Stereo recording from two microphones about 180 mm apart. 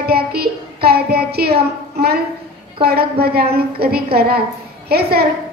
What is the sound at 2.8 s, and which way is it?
A woman's voice, 60° right (ahead or behind).